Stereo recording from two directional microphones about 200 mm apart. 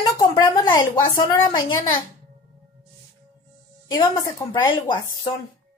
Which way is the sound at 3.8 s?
20° left (ahead or behind).